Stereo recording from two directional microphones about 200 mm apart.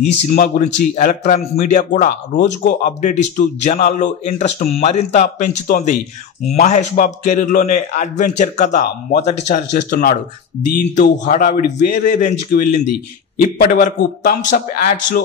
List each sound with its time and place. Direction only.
0.3 s a man's voice: 35° left (ahead or behind)